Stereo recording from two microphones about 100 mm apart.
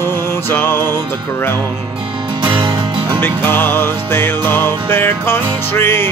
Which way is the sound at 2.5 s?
45° right (ahead or behind).